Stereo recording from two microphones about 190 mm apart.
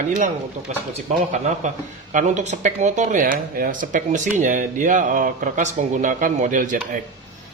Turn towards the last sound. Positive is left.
turn(degrees=-45)  # may be behind; listen again after turning